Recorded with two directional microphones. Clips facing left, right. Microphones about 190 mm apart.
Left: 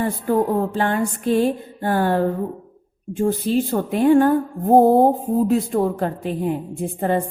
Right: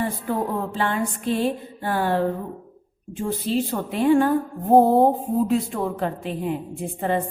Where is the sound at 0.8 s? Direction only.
50° left (ahead or behind).